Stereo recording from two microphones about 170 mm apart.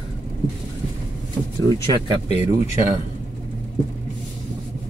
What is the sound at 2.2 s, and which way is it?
Speech, 40° left (ahead or behind).